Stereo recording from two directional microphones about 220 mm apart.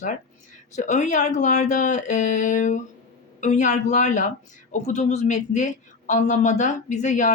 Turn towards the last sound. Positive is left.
turn(degrees=35)  # may be behind; listen again after turning